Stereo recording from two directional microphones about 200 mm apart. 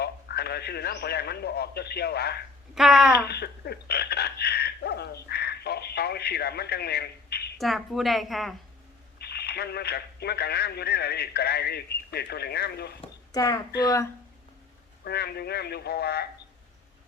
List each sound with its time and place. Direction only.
0.0 s a man's voice: 55° left (ahead or behind)
2.7 s a woman's voice: centre (ahead or behind)
3.2 s speech: 55° left (ahead or behind)
7.6 s a woman's voice: centre (ahead or behind)
9.1 s speech: 55° left (ahead or behind)
13.0 s a sound: 20° left (ahead or behind)
13.8 s speech: 15° left (ahead or behind)
15.0 s speech: 55° left (ahead or behind)